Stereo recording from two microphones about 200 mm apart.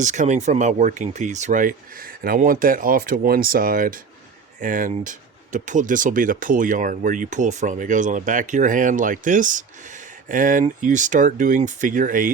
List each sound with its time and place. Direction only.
0.0 s speech: 35° right (ahead or behind)